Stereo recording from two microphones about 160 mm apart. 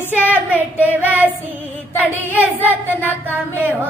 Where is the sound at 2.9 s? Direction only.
10° left (ahead or behind).